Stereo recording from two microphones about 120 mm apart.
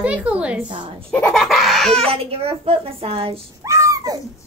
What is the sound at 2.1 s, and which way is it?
A woman's voice, 55° right (ahead or behind).